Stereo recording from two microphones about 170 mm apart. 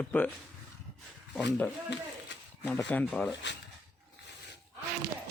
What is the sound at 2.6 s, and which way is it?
Speech, 5° left (ahead or behind).